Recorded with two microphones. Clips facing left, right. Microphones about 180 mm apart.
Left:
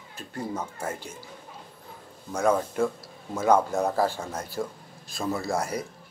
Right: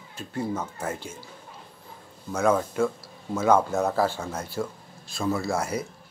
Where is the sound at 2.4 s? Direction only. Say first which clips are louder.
Right 1 dB; 35° left (ahead or behind).